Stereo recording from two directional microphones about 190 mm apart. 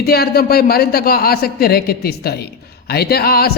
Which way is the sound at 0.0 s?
55° left (ahead or behind).